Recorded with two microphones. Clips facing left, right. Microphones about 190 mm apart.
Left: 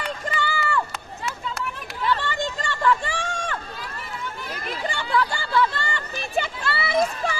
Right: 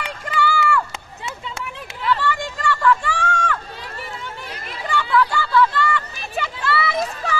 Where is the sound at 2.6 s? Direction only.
25° left (ahead or behind).